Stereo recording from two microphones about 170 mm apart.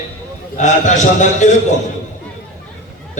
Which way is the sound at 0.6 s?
45° left (ahead or behind).